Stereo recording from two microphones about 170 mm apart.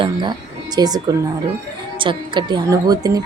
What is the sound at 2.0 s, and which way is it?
Speech, 30° right (ahead or behind).